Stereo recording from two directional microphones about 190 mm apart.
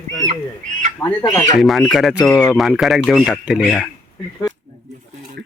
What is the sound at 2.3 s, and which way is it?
Speech, 15° left (ahead or behind).